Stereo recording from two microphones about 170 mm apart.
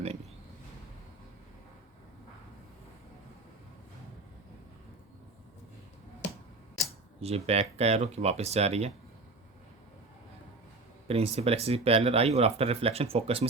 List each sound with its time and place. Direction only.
7.2 s speech: 35° right (ahead or behind)
11.1 s speech: 35° right (ahead or behind)